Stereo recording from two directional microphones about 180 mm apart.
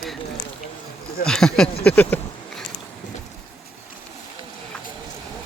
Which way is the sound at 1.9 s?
10° left (ahead or behind).